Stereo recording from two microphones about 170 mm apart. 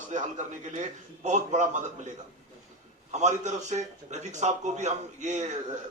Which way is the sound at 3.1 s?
45° right (ahead or behind).